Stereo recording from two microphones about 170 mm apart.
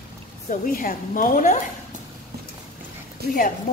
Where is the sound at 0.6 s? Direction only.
55° left (ahead or behind).